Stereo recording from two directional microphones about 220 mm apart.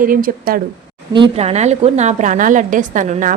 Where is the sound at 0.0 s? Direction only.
40° right (ahead or behind).